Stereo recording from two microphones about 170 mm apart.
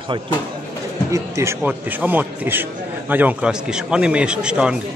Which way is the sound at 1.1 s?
15° right (ahead or behind).